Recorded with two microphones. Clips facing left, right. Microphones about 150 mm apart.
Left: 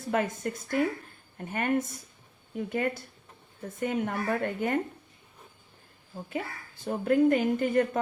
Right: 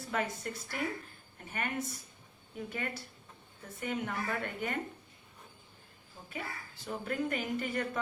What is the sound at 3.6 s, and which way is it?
A woman's voice, 50° left (ahead or behind).